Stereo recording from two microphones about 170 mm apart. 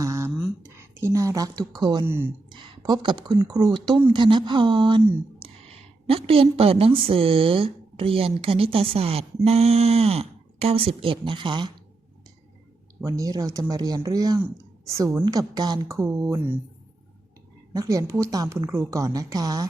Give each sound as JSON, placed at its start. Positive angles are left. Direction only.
{"t": 0.0, "sound": "a sound", "side_deg": -15}
{"t": 0.8, "sound": "speech", "side_deg": -15}
{"t": 2.0, "sound": "a woman's voice", "side_deg": -15}
{"t": 2.5, "sound": "a woman's voice", "side_deg": -25}
{"t": 13.0, "sound": "a woman's voice", "side_deg": -20}
{"t": 17.7, "sound": "speech", "side_deg": -20}